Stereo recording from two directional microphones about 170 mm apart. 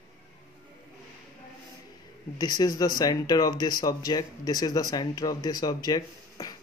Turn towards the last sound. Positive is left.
turn(degrees=20)  # may be behind; listen again after turning